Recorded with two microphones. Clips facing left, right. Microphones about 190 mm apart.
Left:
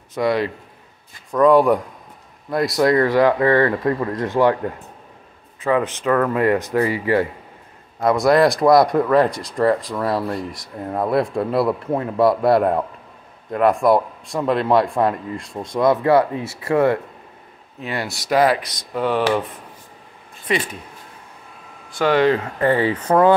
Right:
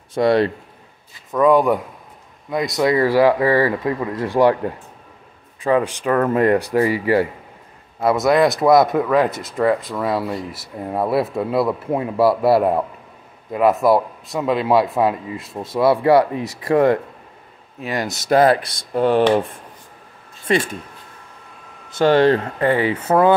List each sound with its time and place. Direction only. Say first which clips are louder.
0.1 s speech: right 4 dB; 30° right (ahead or behind)
1.3 s a man's voice: left 1 dB; centre (ahead or behind)
4.1 s speech: even; 25° right (ahead or behind)
5.6 s speech: right 2 dB; 30° right (ahead or behind)
5.9 s speech: even; 20° right (ahead or behind)
6.4 s speech: right 2 dB; 35° right (ahead or behind)
8.0 s a man's voice: left 1 dB; 5° right (ahead or behind)
18.0 s speech: right 3 dB; 25° right (ahead or behind)
21.9 s speech: right 3 dB; 30° right (ahead or behind)
22.6 s speech: even; 20° right (ahead or behind)
22.9 s speech: left 1 dB; 10° right (ahead or behind)